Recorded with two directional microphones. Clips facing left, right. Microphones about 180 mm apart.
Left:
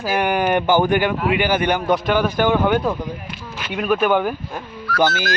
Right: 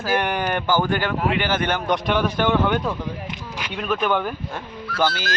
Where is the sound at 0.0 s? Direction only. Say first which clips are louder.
Left 3 dB; 10° left (ahead or behind).